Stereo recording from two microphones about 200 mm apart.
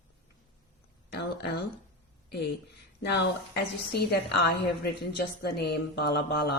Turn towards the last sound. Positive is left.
turn(degrees=55)  # may be behind; listen again after turning